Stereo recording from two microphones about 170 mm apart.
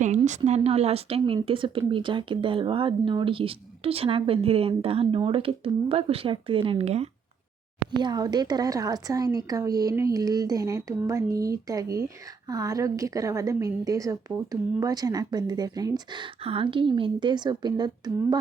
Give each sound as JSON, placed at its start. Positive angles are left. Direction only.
{"t": 0.3, "sound": "speech", "side_deg": -40}
{"t": 7.9, "sound": "speech", "side_deg": -25}
{"t": 16.4, "sound": "speech", "side_deg": -35}